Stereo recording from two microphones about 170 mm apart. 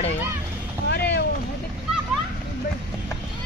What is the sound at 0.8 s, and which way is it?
Vehicle, 80° left.